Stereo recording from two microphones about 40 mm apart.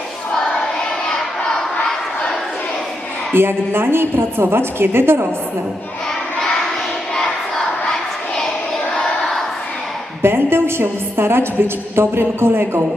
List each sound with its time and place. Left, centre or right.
3.3 s a woman's voice: right
7.2 s battle cry: centre
10.2 s a woman's voice: right